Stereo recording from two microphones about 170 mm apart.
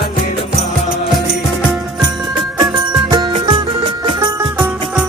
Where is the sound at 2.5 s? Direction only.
20° right (ahead or behind).